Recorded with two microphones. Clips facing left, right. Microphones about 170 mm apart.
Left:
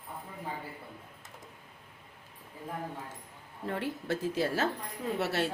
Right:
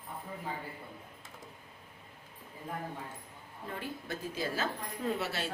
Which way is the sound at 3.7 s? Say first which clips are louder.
Left 7 dB; 80° left.